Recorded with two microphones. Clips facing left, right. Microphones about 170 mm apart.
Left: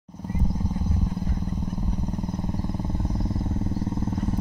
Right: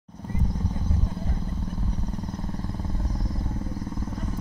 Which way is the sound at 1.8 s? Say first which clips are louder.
Left 3 dB; 15° left (ahead or behind).